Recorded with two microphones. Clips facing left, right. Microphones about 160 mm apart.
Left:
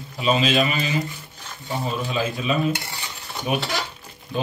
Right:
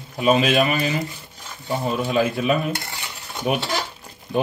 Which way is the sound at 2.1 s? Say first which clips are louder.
Right 6 dB; 60° right (ahead or behind).